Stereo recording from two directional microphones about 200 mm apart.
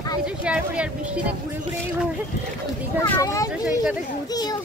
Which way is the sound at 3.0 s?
15° left (ahead or behind).